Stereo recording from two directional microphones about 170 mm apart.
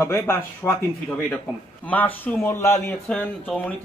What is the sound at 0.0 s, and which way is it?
Speech, 15° left (ahead or behind).